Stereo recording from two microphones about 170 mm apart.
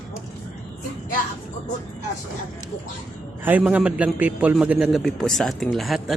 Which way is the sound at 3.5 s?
5° right (ahead or behind).